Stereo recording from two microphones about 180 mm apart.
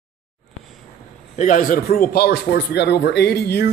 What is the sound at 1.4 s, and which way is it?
A man's voice, 45° left (ahead or behind).